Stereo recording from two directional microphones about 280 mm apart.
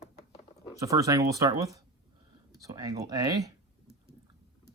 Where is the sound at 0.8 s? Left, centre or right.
Centre.